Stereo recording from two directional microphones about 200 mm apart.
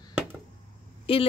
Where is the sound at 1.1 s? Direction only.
25° left (ahead or behind).